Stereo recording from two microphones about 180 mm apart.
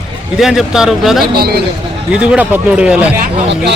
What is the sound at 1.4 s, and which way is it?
Speech, 60° right (ahead or behind).